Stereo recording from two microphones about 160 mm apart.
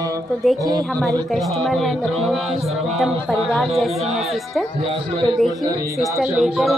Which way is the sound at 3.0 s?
Centre (ahead or behind).